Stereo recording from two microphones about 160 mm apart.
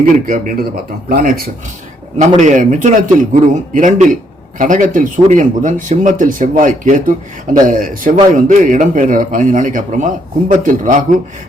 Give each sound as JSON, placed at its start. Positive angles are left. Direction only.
{"t": 0.0, "sound": "speech", "side_deg": -60}
{"t": 2.1, "sound": "a man's voice", "side_deg": -50}